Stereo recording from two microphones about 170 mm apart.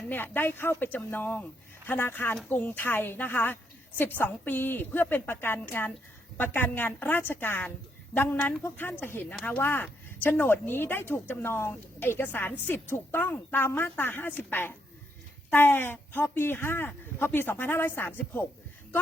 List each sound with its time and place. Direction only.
0.1 s a woman's voice: 10° left (ahead or behind)